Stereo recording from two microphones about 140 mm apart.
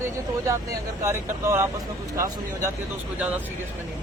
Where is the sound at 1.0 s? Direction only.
20° right (ahead or behind).